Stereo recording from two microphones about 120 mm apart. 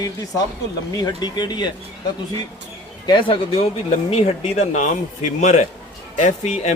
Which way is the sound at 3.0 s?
40° left (ahead or behind).